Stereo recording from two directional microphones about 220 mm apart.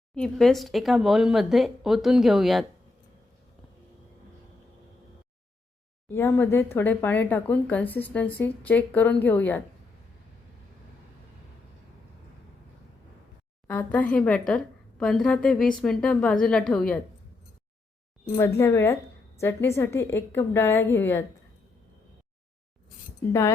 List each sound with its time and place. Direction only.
0.1 s a woman's voice: centre (ahead or behind)
6.1 s speech: 10° left (ahead or behind)
13.7 s a woman's voice: 5° left (ahead or behind)
18.3 s speech: 10° left (ahead or behind)